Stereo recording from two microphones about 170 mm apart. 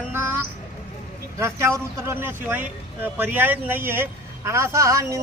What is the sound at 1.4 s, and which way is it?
Speech, 15° right (ahead or behind).